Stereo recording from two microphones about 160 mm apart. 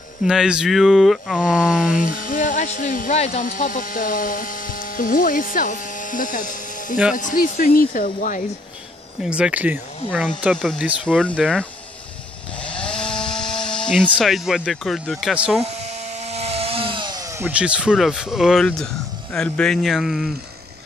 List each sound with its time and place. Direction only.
0.2 s speech: 5° right (ahead or behind)
1.8 s speech: 60° left (ahead or behind)
9.2 s speech: 5° right (ahead or behind)
10.5 s speech: 5° left (ahead or behind)
10.8 s speech: 5° right (ahead or behind)
11.1 s speech: 5° left (ahead or behind)
12.6 s chainsaw: 5° left (ahead or behind)
14.0 s speech: 5° right (ahead or behind)
16.3 s chainsaw: 40° right (ahead or behind); by 17.5 s 25° right (ahead or behind)
17.5 s speech: 5° right (ahead or behind)